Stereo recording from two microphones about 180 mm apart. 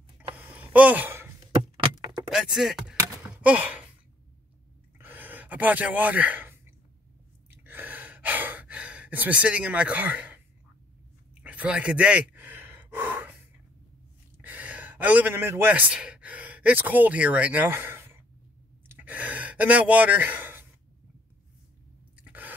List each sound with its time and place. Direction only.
0.4 s a sound: 10° right (ahead or behind)
1.6 s keys jangling: 25° right (ahead or behind)
2.3 s chopping: centre (ahead or behind)
3.0 s a sound: 10° right (ahead or behind)
4.9 s gasp: 10° right (ahead or behind)
11.4 s gasp: 5° right (ahead or behind)
14.4 s speech: 10° right (ahead or behind)
18.9 s gasp: 10° right (ahead or behind)
22.1 s chewing: 10° right (ahead or behind)